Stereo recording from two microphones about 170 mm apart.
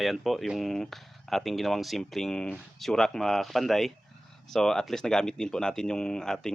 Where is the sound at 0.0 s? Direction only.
Centre (ahead or behind).